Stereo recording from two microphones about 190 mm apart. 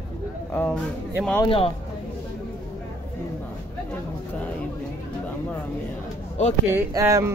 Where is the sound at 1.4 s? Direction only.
30° left (ahead or behind).